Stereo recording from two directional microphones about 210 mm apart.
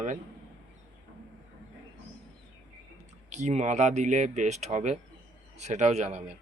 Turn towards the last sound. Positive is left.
turn(degrees=-30)  # may be behind; listen again after turning